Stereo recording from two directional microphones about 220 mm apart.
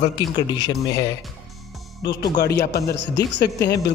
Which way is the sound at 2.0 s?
50° left (ahead or behind).